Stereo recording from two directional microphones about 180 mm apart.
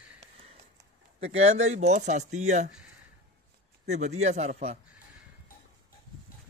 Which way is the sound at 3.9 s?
40° right (ahead or behind).